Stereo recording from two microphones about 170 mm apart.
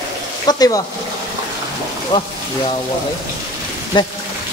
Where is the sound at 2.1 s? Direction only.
20° left (ahead or behind).